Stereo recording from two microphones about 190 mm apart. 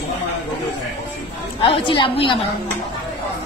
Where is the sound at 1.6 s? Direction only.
25° left (ahead or behind).